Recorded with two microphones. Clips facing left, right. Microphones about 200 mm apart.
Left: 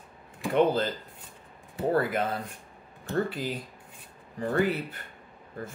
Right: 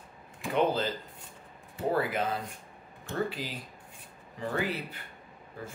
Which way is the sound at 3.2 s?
50° left (ahead or behind).